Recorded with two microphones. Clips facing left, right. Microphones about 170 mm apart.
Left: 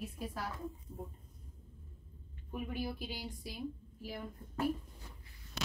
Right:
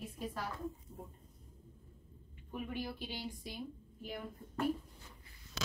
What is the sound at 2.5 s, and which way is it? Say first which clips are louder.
A woman's voice: left 2 dB; 5° left (ahead or behind).